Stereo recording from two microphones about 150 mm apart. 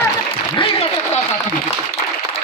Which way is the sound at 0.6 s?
40° left (ahead or behind).